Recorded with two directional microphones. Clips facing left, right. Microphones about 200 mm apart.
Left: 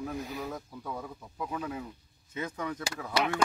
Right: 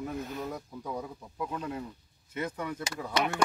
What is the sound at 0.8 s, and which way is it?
Speech, 15° right (ahead or behind).